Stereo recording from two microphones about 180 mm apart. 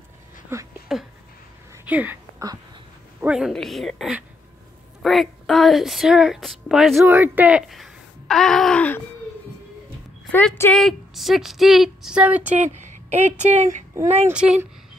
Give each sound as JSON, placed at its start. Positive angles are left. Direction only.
{"t": 0.5, "sound": "a sound", "side_deg": -15}
{"t": 0.9, "sound": "a sound", "side_deg": -5}
{"t": 1.9, "sound": "speech", "side_deg": -10}
{"t": 3.2, "sound": "a woman's voice", "side_deg": -5}
{"t": 10.3, "sound": "speech", "side_deg": 10}
{"t": 12.5, "sound": "speech", "side_deg": -40}
{"t": 14.3, "sound": "speech", "side_deg": -5}